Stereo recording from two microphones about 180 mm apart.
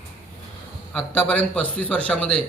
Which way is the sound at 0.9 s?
10° left (ahead or behind).